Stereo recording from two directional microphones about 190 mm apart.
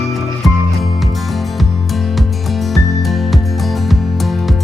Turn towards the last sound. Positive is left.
turn(degrees=0)  # may be behind; listen again after turning